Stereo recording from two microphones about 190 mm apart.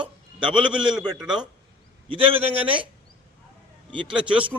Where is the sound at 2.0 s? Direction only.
25° right (ahead or behind).